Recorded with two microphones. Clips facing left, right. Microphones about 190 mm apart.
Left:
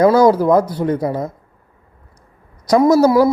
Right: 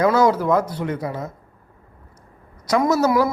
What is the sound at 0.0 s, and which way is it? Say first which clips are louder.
Speech: left 6 dB; 35° left (ahead or behind).